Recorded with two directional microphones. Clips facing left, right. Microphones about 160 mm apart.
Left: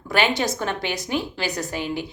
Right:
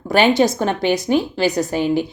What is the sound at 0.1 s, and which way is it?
Speech, 40° right (ahead or behind).